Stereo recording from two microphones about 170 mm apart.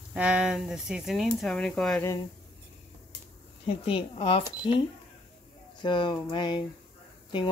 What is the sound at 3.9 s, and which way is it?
A woman's voice, 30° left (ahead or behind).